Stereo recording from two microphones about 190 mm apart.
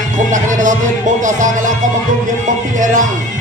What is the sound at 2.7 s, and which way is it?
Music, 40° right (ahead or behind).